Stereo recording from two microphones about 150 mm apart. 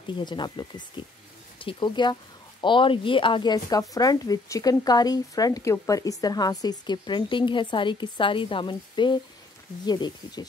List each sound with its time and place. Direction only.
0.0 s speech: 30° left (ahead or behind)